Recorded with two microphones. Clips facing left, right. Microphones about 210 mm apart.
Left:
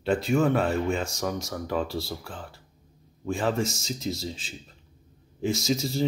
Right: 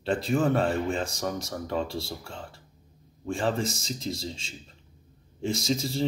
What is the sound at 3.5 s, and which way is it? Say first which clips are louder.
Speech: left 1 dB; centre (ahead or behind).